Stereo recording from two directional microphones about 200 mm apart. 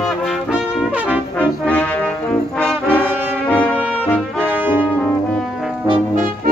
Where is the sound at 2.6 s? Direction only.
5° left (ahead or behind).